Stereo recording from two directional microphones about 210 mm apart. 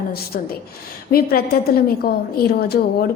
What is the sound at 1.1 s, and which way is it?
A woman's voice, 45° left (ahead or behind).